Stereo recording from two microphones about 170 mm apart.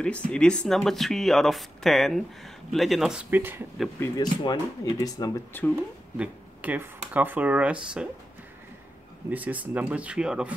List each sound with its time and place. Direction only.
0.0 s speech: 5° left (ahead or behind); by 3.6 s 10° right (ahead or behind)
4.0 s speech: 25° left (ahead or behind)
6.1 s speech: 10° right (ahead or behind)
9.3 s speech: 10° right (ahead or behind)